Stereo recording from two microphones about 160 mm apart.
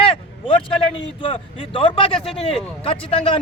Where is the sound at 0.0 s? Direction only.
30° left (ahead or behind).